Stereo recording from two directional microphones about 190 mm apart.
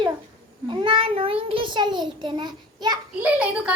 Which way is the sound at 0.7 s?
25° right (ahead or behind).